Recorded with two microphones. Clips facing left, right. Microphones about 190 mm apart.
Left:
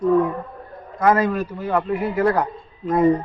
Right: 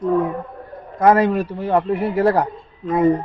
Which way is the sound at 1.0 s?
35° right (ahead or behind).